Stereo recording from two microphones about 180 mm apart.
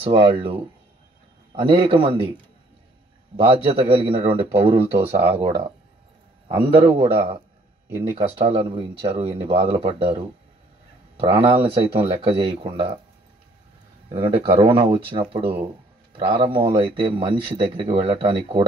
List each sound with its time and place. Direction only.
0.0 s speech: 30° right (ahead or behind)
3.5 s speech: 30° right (ahead or behind)
11.1 s speech: 30° right (ahead or behind)
14.0 s speech: 30° right (ahead or behind)